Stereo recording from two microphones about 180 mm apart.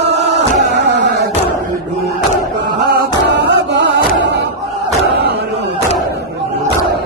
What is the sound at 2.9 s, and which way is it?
Music, 70° right (ahead or behind).